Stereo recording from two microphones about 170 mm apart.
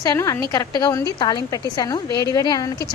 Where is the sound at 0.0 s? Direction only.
20° left (ahead or behind).